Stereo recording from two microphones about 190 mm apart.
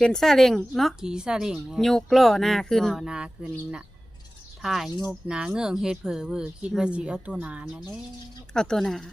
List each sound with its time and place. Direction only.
0.0 s a woman's voice: centre (ahead or behind)
4.6 s a woman's voice: centre (ahead or behind)